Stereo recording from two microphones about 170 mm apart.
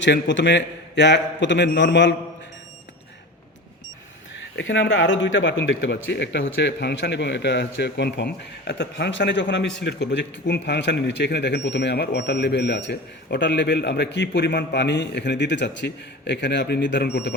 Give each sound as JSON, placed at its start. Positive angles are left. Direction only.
{"t": 0.0, "sound": "speech", "side_deg": 90}
{"t": 4.5, "sound": "speech", "side_deg": 90}